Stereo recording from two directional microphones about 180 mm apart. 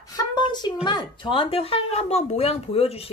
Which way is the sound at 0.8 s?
25° left (ahead or behind).